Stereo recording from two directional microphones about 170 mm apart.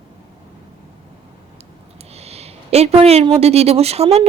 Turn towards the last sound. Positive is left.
turn(degrees=-35)  # may be behind; listen again after turning